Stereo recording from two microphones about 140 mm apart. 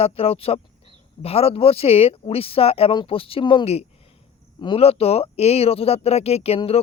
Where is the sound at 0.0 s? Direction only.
45° left (ahead or behind).